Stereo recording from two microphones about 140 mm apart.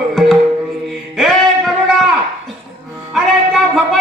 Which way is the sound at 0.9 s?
Centre (ahead or behind).